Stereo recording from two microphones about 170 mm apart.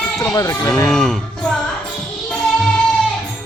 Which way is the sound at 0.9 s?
Centre (ahead or behind).